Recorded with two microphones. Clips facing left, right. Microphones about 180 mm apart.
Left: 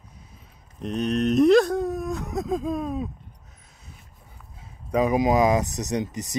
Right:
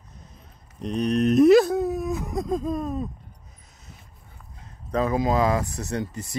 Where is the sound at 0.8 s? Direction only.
Centre (ahead or behind).